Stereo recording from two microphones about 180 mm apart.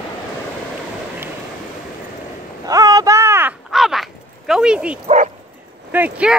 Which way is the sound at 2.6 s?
20° right (ahead or behind).